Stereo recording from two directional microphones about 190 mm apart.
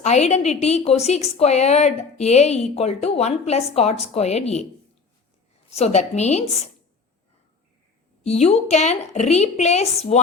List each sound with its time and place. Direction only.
0.0 s a woman's voice: 35° left (ahead or behind)
5.7 s a woman's voice: 35° left (ahead or behind)
8.2 s a woman's voice: 35° left (ahead or behind)